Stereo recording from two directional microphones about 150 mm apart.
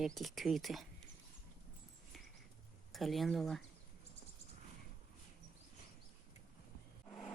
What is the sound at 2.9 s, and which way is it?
Speech, centre (ahead or behind).